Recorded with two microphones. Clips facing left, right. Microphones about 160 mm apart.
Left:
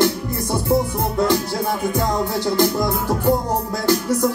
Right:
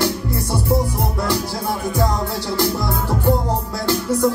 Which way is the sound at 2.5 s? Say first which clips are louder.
Left 1 dB; 15° left (ahead or behind).